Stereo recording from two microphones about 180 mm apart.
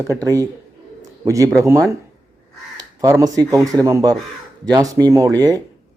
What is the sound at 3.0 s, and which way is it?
Speech, 20° right (ahead or behind).